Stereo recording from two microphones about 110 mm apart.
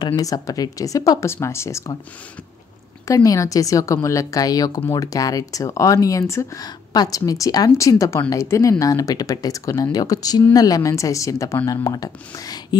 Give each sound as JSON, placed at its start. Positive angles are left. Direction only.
{"t": 0.0, "sound": "speech", "side_deg": 35}
{"t": 3.1, "sound": "speech", "side_deg": 30}